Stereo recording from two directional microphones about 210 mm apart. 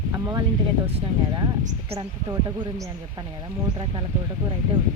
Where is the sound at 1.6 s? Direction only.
30° right (ahead or behind).